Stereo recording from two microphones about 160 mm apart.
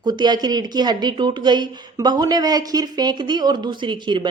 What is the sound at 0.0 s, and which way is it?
Speech, 25° right (ahead or behind).